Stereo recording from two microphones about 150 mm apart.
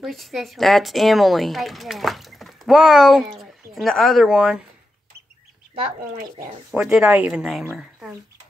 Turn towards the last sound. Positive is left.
turn(degrees=0)  # may be behind; listen again after turning